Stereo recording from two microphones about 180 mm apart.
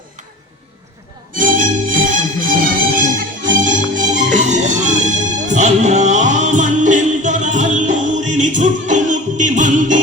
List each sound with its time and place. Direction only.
1.3 s music: 50° right (ahead or behind)